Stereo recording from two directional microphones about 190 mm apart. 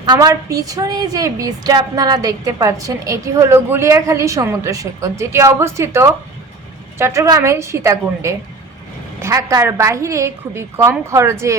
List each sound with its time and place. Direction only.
0.0 s a woman's voice: 20° right (ahead or behind)